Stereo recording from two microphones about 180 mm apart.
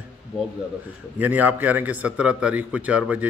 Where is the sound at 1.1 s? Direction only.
10° right (ahead or behind).